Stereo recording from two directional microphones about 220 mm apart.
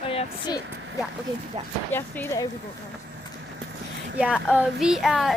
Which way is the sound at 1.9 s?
10° left (ahead or behind).